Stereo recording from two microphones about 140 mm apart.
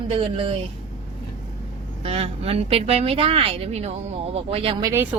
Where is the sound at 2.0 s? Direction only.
45° right (ahead or behind).